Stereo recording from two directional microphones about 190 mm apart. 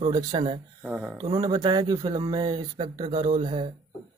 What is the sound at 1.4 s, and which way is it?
Speech, 20° right (ahead or behind).